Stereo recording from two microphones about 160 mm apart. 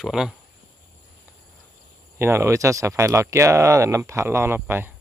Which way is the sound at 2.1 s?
15° right (ahead or behind).